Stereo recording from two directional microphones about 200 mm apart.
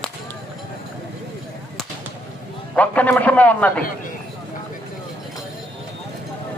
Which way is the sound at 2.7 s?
5° left (ahead or behind).